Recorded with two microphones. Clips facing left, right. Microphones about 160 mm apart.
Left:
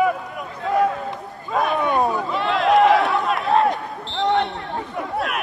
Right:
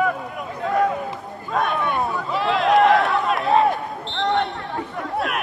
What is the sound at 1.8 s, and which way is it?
Speech, 20° left (ahead or behind).